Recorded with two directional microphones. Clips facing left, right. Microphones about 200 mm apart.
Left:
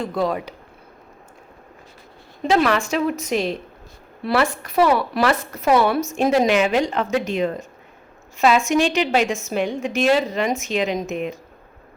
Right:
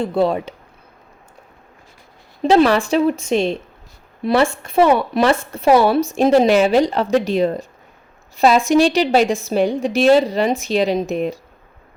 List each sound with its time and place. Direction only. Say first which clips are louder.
0.0 s speech: right 5 dB; 30° right (ahead or behind)
2.4 s a woman's voice: right 5 dB; 30° right (ahead or behind)